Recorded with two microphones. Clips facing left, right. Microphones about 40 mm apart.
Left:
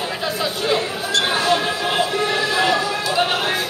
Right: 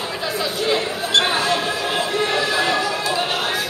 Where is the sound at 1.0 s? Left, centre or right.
Right.